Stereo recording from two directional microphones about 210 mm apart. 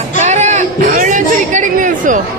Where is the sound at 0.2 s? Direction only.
35° right (ahead or behind).